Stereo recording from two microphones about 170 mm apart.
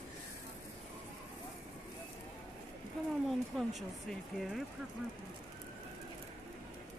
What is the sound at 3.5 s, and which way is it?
Speech, centre (ahead or behind).